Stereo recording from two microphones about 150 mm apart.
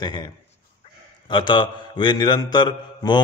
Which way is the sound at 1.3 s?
30° left (ahead or behind).